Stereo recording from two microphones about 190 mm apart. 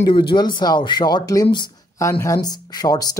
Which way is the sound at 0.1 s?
25° left (ahead or behind).